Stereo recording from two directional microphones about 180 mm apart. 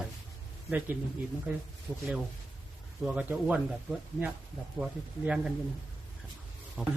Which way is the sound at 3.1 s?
5° right (ahead or behind).